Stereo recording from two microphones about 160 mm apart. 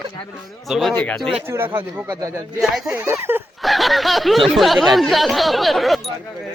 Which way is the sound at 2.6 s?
5° right (ahead or behind).